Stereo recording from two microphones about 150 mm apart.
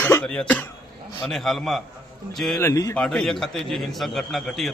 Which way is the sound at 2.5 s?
20° left (ahead or behind).